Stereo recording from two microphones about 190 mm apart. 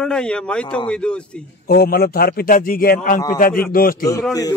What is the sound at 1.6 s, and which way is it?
A man's voice, 55° left (ahead or behind).